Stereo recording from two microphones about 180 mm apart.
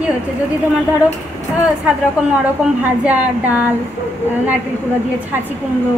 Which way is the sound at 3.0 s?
5° right (ahead or behind).